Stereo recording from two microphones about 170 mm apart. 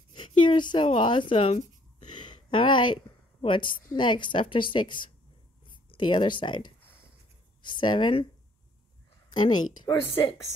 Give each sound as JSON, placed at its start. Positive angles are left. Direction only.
{"t": 0.1, "sound": "a woman's voice", "side_deg": 30}
{"t": 9.3, "sound": "a woman's voice", "side_deg": 25}